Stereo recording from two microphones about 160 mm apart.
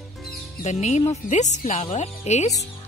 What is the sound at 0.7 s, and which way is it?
Speech, 45° left (ahead or behind).